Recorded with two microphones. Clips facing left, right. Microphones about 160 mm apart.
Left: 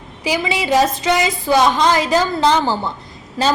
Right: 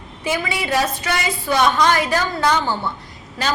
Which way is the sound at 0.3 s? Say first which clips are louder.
Left 4 dB; 20° left (ahead or behind).